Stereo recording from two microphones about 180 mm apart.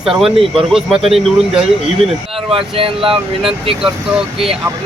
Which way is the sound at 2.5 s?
30° right (ahead or behind).